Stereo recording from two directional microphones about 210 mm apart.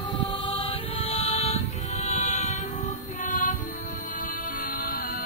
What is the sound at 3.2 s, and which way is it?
Music, 35° left (ahead or behind).